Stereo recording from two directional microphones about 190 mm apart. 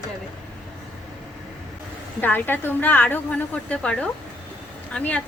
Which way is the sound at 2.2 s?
10° left (ahead or behind).